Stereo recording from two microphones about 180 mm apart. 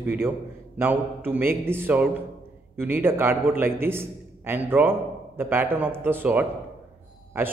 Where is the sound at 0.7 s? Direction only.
10° right (ahead or behind).